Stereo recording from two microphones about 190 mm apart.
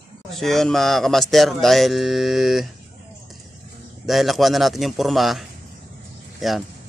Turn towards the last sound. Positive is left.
turn(degrees=0)  # may be behind; listen again after turning